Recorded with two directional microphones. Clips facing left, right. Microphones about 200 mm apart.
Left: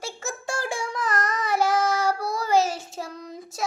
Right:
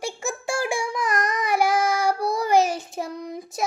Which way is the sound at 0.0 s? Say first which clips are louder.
Right 4 dB; 10° right (ahead or behind).